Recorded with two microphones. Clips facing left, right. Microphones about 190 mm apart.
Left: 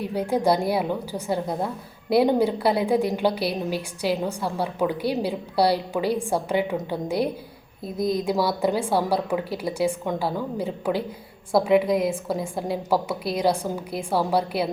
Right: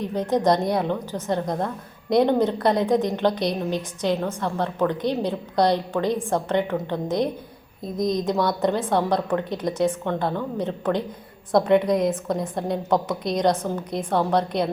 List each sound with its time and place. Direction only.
0.0 s a woman's voice: 10° left (ahead or behind)